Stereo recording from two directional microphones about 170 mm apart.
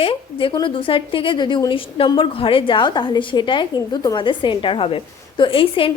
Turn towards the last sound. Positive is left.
turn(degrees=30)  # may be behind; listen again after turning